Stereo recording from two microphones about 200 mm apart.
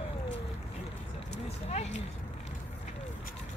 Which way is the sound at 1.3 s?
30° left (ahead or behind).